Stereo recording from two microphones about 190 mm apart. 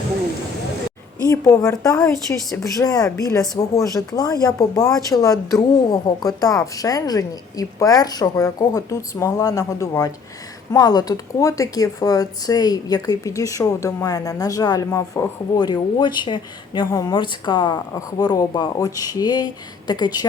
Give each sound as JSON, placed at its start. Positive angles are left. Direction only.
{"t": 1.3, "sound": "speech", "side_deg": 15}